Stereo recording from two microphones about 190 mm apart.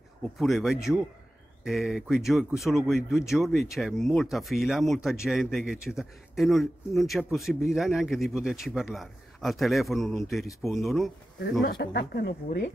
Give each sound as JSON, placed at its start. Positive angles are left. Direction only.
{"t": 0.4, "sound": "a man's voice", "side_deg": 0}
{"t": 11.6, "sound": "speech", "side_deg": 55}